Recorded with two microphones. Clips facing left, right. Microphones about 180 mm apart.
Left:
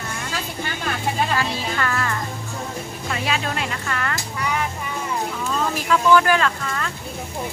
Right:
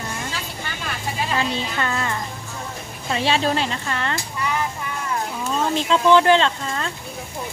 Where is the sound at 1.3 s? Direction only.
20° right (ahead or behind).